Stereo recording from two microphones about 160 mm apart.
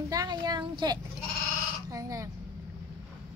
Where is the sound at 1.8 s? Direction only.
20° right (ahead or behind).